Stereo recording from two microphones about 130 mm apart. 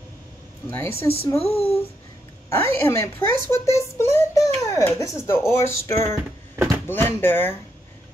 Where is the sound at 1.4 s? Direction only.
50° left (ahead or behind).